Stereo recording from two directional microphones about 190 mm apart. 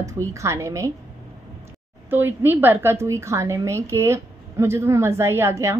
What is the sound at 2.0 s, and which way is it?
A woman's voice, 10° right (ahead or behind).